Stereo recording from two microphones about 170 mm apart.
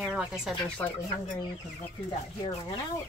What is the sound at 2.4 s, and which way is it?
Speech, 35° left (ahead or behind).